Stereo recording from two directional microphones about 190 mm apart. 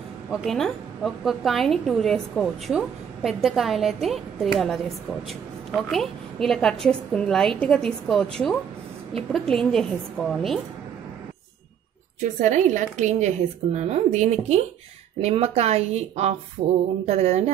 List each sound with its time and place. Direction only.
0.3 s a woman's voice: centre (ahead or behind)
12.4 s a woman's voice: 40° right (ahead or behind)